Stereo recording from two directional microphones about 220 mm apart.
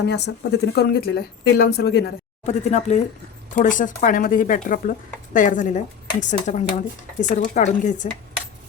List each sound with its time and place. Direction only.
0.0 s speech: 50° left (ahead or behind)
2.4 s speech: 30° left (ahead or behind)